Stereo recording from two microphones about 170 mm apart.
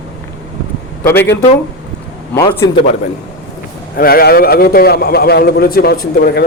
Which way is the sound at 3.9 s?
60° left (ahead or behind).